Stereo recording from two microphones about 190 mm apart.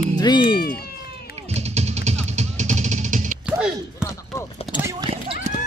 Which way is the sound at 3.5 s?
5° right (ahead or behind).